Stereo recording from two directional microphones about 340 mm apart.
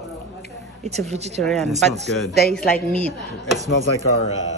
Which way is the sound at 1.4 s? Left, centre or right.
Centre.